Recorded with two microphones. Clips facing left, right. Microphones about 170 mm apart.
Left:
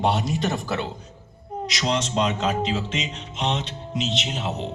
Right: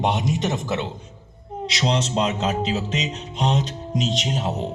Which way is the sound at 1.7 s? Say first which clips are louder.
Right 2 dB; 30° right (ahead or behind).